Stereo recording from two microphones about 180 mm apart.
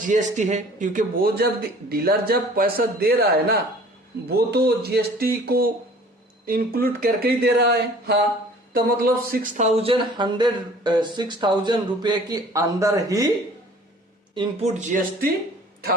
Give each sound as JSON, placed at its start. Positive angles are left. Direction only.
{"t": 0.0, "sound": "speech", "side_deg": -45}
{"t": 14.3, "sound": "speech", "side_deg": -40}